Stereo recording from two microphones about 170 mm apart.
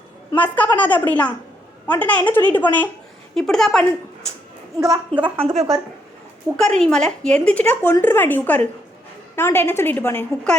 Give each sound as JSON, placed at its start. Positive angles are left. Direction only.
{"t": 0.3, "sound": "a woman's voice", "side_deg": 10}
{"t": 4.9, "sound": "a woman's voice", "side_deg": -25}
{"t": 6.6, "sound": "a woman's voice", "side_deg": 5}